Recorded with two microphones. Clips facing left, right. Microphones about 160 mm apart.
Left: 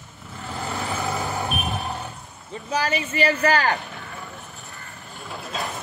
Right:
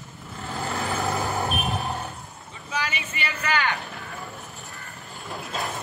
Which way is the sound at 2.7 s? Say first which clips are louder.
Left 6 dB; 40° left (ahead or behind).